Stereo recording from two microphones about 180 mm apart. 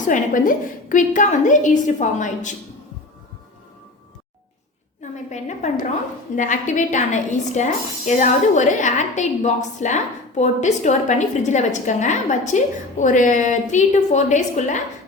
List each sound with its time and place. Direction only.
0.0 s a woman's voice: 45° left (ahead or behind)
5.1 s a woman's voice: 40° left (ahead or behind)